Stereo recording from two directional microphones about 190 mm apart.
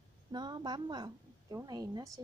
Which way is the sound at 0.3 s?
25° right (ahead or behind).